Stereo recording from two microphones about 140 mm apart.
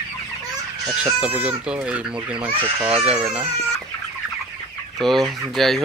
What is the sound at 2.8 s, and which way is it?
Speech, 45° right (ahead or behind).